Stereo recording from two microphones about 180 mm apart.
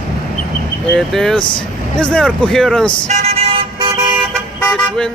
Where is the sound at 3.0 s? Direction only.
40° right (ahead or behind).